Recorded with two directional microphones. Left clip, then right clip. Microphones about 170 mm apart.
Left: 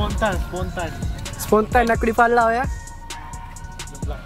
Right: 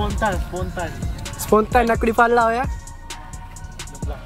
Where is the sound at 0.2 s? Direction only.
20° left (ahead or behind).